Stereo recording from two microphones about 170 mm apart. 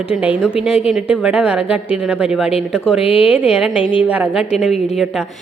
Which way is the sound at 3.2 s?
5° right (ahead or behind).